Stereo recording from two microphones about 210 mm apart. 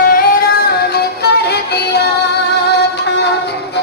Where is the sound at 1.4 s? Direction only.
50° left (ahead or behind).